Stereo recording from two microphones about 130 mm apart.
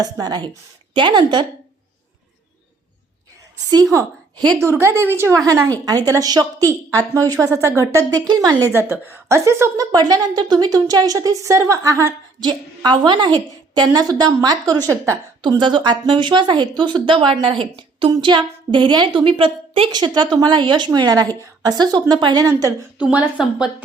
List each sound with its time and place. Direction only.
0.0 s a woman's voice: 30° right (ahead or behind)
4.5 s a woman's voice: 20° right (ahead or behind)
12.4 s a woman's voice: 35° right (ahead or behind)
15.4 s a woman's voice: 35° right (ahead or behind)
19.9 s a woman's voice: 35° right (ahead or behind)
23.0 s a woman's voice: 5° right (ahead or behind)